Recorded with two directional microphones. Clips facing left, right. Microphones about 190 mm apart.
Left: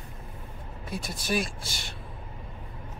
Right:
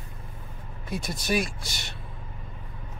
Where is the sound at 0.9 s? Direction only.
Centre (ahead or behind).